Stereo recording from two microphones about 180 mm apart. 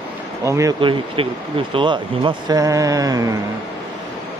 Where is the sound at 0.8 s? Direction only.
30° right (ahead or behind).